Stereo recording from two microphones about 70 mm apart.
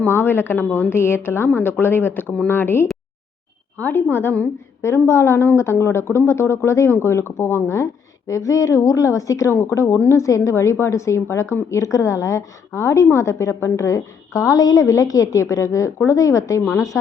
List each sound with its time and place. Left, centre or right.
0.0 s a woman's voice: left
5.0 s speech: left
8.3 s a woman's voice: left
9.6 s a woman's voice: left